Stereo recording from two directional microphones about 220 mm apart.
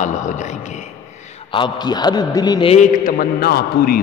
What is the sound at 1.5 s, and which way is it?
A man's voice, 20° left (ahead or behind).